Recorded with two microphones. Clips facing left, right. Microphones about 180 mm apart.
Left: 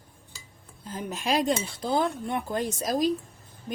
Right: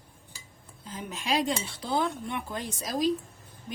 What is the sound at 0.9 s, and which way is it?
Cutlery, 45° left (ahead or behind).